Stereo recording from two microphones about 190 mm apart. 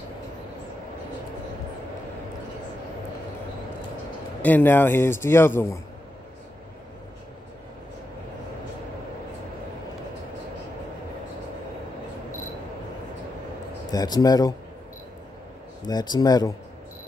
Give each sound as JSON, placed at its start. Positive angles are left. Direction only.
{"t": 4.4, "sound": "a man's voice", "side_deg": 10}
{"t": 13.8, "sound": "a man's voice", "side_deg": 20}
{"t": 15.8, "sound": "a man's voice", "side_deg": 20}